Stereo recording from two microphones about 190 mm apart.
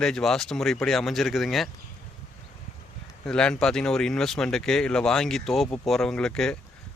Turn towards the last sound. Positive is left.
turn(degrees=5)  # may be behind; listen again after turning